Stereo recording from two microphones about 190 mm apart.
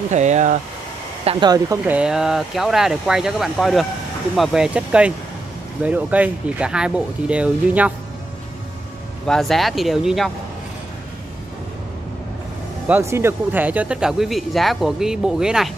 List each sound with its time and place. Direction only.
0.1 s speech: 40° right (ahead or behind)
1.2 s speech: 25° right (ahead or behind)
1.9 s speech: 5° right (ahead or behind)
9.2 s speech: centre (ahead or behind)
12.8 s speech: 10° right (ahead or behind)